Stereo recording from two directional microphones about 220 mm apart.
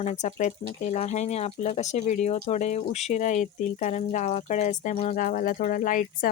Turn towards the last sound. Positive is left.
turn(degrees=35)  # may be behind; listen again after turning